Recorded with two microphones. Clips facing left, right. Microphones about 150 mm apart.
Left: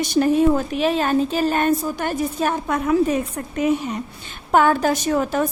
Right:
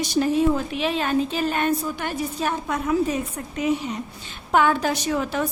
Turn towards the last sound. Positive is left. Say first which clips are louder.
# left 4 dB
turn(degrees=45)  # may be behind; listen again after turning